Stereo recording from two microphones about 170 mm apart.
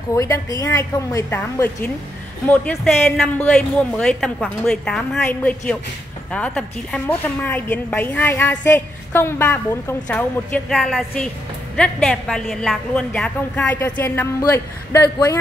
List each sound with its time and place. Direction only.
0.1 s a woman's voice: 20° left (ahead or behind)